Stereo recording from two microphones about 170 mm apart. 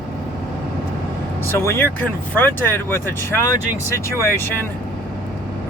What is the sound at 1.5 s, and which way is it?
Speech, 15° left (ahead or behind).